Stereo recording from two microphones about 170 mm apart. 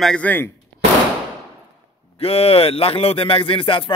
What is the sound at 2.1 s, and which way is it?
Speech, 35° left (ahead or behind).